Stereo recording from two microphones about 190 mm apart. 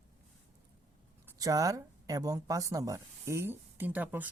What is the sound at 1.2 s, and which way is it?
Speech, 20° right (ahead or behind).